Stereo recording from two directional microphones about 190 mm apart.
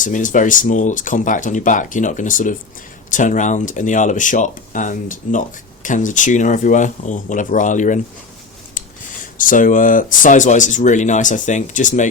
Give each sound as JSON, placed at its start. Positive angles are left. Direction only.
{"t": 0.0, "sound": "speech", "side_deg": 45}
{"t": 9.4, "sound": "speech", "side_deg": 45}